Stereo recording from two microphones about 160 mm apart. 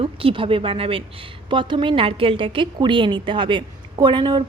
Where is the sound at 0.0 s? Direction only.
35° right (ahead or behind).